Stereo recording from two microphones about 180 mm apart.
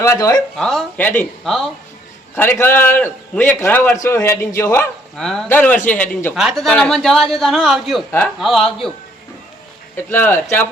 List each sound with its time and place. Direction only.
0.0 s speech: 15° left (ahead or behind)
0.5 s a man's voice: centre (ahead or behind)
2.3 s a man's voice: 15° left (ahead or behind)
5.1 s a man's voice: centre (ahead or behind)
6.3 s a man's voice: centre (ahead or behind)
10.1 s a man's voice: 10° left (ahead or behind)